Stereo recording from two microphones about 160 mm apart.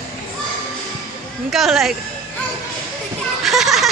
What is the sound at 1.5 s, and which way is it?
Speech, centre (ahead or behind).